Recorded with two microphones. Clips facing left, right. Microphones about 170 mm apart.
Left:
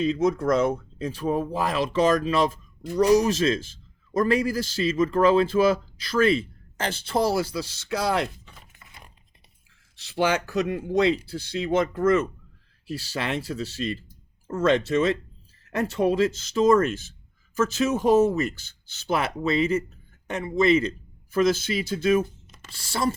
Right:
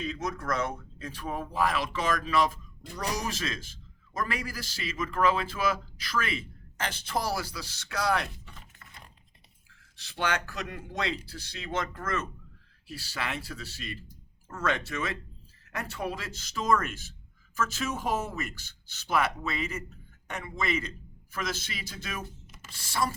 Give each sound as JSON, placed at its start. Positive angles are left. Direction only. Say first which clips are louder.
{"t": 0.0, "sound": "a man's voice", "louder": "left 12 dB", "side_deg": 25}
{"t": 8.4, "sound": "typing", "louder": "even", "side_deg": 10}
{"t": 10.1, "sound": "a man's voice", "louder": "left 8 dB", "side_deg": 25}